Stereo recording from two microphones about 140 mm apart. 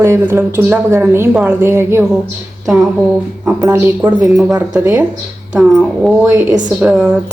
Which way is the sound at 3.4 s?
15° right (ahead or behind).